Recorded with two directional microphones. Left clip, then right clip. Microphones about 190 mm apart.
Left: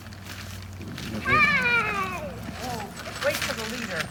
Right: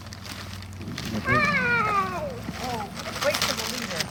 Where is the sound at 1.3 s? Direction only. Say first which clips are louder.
Left 2 dB; 20° right (ahead or behind).